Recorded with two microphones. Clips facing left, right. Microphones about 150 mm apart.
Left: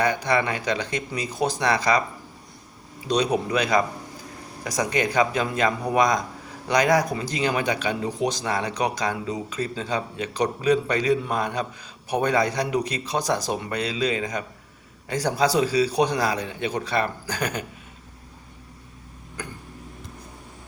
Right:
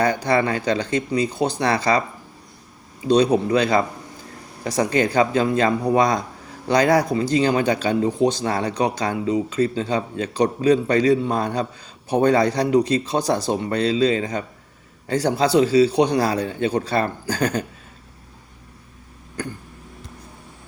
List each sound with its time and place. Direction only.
0.0 s a man's voice: 30° right (ahead or behind)
3.1 s a man's voice: 30° right (ahead or behind)